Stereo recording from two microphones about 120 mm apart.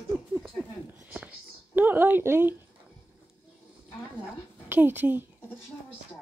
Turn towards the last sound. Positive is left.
turn(degrees=-15)  # may be behind; listen again after turning